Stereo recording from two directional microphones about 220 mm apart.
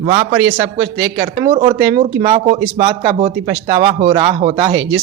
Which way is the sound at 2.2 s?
25° right (ahead or behind).